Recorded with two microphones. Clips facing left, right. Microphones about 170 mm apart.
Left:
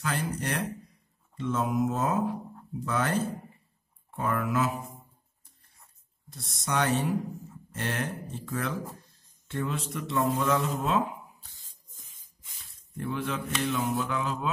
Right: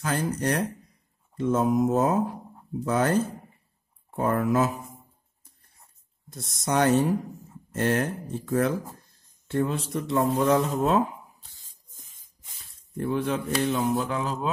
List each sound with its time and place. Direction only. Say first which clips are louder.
0.0 s speech: right 5 dB; 40° right (ahead or behind)
6.3 s speech: right 5 dB; 45° right (ahead or behind)
12.9 s speech: right 6 dB; 40° right (ahead or behind)